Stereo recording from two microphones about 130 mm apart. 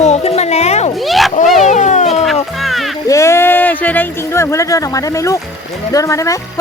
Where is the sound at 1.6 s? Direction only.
70° left (ahead or behind).